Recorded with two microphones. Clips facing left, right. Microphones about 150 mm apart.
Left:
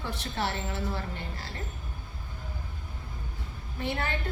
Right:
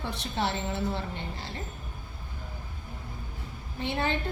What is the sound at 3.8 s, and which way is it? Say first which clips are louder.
Speech: right 2 dB; 20° right (ahead or behind).